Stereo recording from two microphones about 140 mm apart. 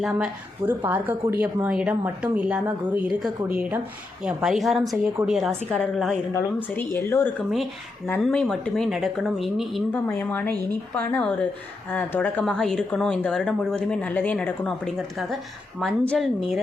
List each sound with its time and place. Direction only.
0.0 s speech: centre (ahead or behind)
0.9 s speech: 15° right (ahead or behind); by 6.1 s 5° left (ahead or behind)
6.3 s speech: 15° left (ahead or behind)
8.2 s speech: 5° left (ahead or behind)
9.9 s speech: 15° left (ahead or behind)